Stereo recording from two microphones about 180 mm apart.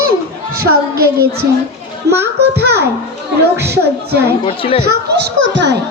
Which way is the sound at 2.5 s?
65° right (ahead or behind).